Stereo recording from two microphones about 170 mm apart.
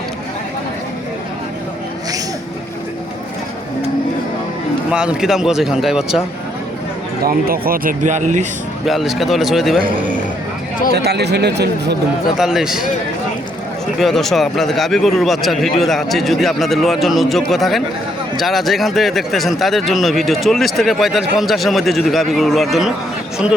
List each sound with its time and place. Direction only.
4.9 s speech: 5° right (ahead or behind)
7.3 s speech: 60° right (ahead or behind)
8.8 s speech: centre (ahead or behind)
10.9 s speech: 70° right (ahead or behind)
12.4 s speech: centre (ahead or behind)
14.0 s speech: centre (ahead or behind)